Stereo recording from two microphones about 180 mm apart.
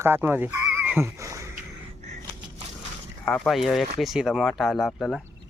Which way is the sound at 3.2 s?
5° left (ahead or behind).